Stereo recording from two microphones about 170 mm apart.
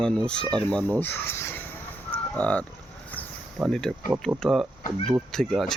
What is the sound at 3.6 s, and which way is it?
Speech, 5° left (ahead or behind).